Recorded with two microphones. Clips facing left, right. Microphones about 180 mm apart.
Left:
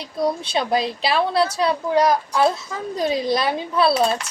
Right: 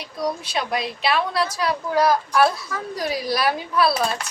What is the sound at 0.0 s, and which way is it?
A woman's voice, 30° left (ahead or behind).